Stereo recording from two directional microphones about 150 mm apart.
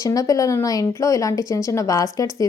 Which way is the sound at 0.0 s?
25° left (ahead or behind).